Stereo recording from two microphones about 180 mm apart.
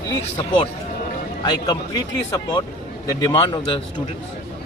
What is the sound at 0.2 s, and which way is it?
Speech, 30° left (ahead or behind).